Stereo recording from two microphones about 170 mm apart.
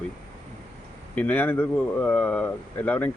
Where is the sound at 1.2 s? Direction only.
10° left (ahead or behind).